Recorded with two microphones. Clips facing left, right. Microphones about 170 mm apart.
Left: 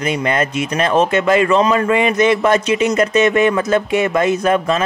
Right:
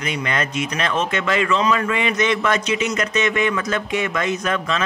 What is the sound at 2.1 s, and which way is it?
Speech, 45° left (ahead or behind).